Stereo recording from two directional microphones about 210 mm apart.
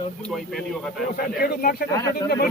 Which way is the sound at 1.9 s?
15° left (ahead or behind).